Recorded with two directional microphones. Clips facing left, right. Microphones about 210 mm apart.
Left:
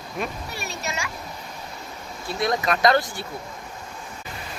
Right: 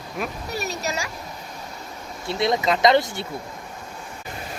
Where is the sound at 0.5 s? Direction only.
40° right (ahead or behind).